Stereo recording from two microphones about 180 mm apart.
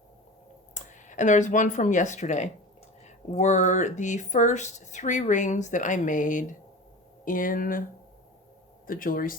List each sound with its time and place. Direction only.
0.7 s speech: 45° left (ahead or behind)
8.9 s speech: 50° left (ahead or behind)